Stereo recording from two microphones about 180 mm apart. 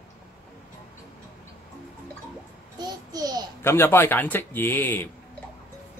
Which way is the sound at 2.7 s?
20° right (ahead or behind).